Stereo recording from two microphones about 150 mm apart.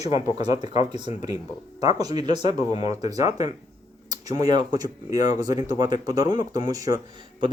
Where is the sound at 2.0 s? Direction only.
25° right (ahead or behind).